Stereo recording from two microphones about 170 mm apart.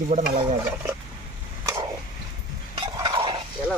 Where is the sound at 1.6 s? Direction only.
20° right (ahead or behind).